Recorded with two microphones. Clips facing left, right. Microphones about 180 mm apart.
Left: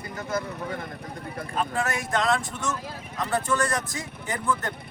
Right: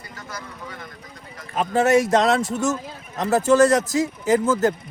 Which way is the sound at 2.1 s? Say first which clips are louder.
Right 7 dB; 40° right (ahead or behind).